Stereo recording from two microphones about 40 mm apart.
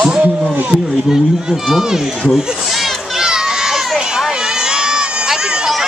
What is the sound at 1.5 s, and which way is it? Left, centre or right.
Speech, centre.